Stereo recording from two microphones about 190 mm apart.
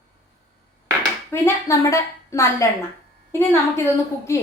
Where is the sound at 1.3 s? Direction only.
15° left (ahead or behind).